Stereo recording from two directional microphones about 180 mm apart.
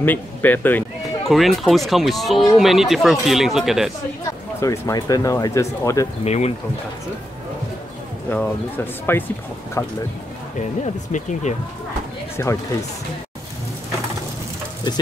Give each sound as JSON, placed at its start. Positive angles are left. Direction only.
{"t": 0.0, "sound": "a sound", "side_deg": 10}
{"t": 1.3, "sound": "speech", "side_deg": 0}
{"t": 4.6, "sound": "speech", "side_deg": 20}
{"t": 6.2, "sound": "speech", "side_deg": 35}
{"t": 8.3, "sound": "speech", "side_deg": 10}
{"t": 11.1, "sound": "speech", "side_deg": 40}
{"t": 12.4, "sound": "speech", "side_deg": 15}